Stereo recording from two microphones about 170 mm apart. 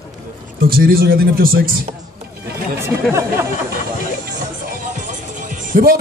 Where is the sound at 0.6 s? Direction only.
60° right (ahead or behind).